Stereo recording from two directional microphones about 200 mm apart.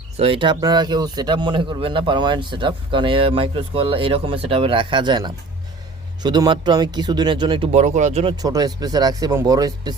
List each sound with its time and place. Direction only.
0.2 s speech: 25° right (ahead or behind)